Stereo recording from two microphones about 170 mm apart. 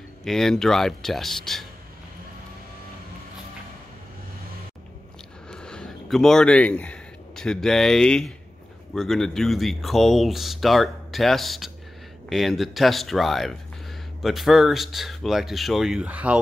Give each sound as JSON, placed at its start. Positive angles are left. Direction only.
{"t": 0.2, "sound": "speech", "side_deg": 5}
{"t": 5.5, "sound": "speech", "side_deg": 5}